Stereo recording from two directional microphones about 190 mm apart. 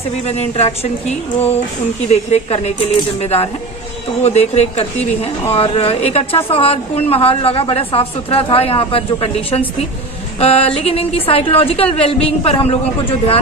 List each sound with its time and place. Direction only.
0.3 s a woman's voice: 35° left (ahead or behind)